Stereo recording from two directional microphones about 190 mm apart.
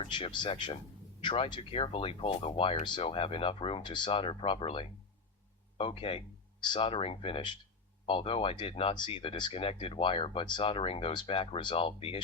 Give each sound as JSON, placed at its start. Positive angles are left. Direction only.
{"t": 0.0, "sound": "speech", "side_deg": 25}